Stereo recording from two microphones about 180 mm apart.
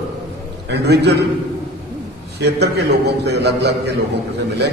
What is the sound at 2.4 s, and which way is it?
A man's voice, 65° right (ahead or behind).